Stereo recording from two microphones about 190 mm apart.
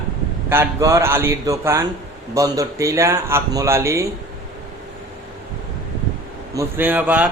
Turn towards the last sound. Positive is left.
turn(degrees=-10)  # may be behind; listen again after turning